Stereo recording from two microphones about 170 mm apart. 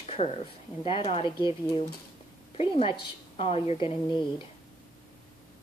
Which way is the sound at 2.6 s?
35° left (ahead or behind).